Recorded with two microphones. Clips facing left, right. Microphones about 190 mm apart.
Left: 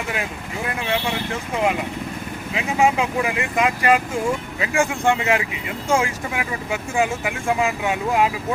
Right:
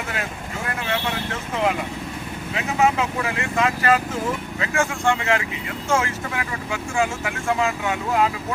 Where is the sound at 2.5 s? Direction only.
10° left (ahead or behind).